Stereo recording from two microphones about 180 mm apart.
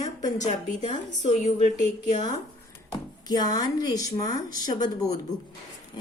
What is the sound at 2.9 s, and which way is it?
Speech, 20° left (ahead or behind).